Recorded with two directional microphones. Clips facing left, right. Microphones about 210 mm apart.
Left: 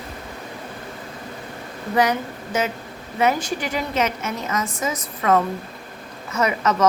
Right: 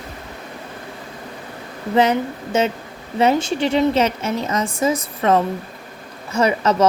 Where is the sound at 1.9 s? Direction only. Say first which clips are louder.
Right 4 dB; 25° right (ahead or behind).